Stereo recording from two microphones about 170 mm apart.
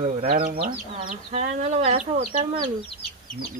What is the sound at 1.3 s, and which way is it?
Speech, 40° right (ahead or behind).